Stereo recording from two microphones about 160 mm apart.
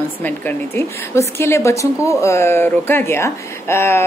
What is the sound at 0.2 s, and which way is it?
A woman's voice, 15° left (ahead or behind).